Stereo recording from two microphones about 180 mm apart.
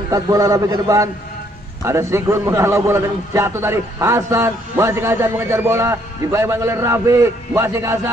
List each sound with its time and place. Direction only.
0.1 s a man's voice: 20° right (ahead or behind)